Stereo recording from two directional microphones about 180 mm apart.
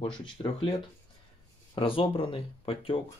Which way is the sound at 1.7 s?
30° left (ahead or behind).